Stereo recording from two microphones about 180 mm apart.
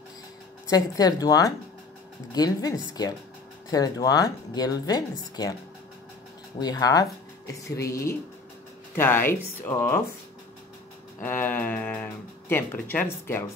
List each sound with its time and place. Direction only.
0.7 s speech: 20° left (ahead or behind)
6.6 s speech: 20° left (ahead or behind)
11.1 s speech: 10° left (ahead or behind)